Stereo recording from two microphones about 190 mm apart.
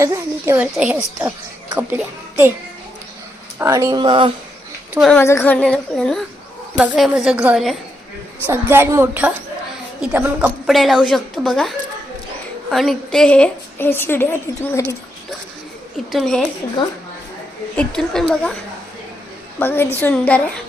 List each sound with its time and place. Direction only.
0.0 s a woman's voice: 15° right (ahead or behind)
3.6 s speech: 15° right (ahead or behind)
4.9 s a woman's voice: centre (ahead or behind)
5.2 s a woman's voice: 15° left (ahead or behind)
12.7 s a woman's voice: centre (ahead or behind)
16.1 s a woman's voice: centre (ahead or behind)
17.7 s a woman's voice: 5° left (ahead or behind)
19.5 s a woman's voice: 10° left (ahead or behind)